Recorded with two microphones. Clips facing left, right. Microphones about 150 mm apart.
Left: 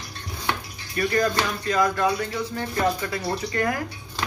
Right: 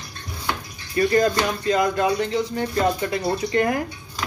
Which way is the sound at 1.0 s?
25° right (ahead or behind).